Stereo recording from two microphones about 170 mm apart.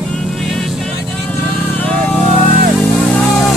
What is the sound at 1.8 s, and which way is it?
Vehicle, 5° left (ahead or behind).